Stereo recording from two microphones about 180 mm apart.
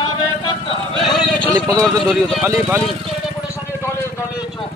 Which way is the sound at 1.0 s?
5° left (ahead or behind).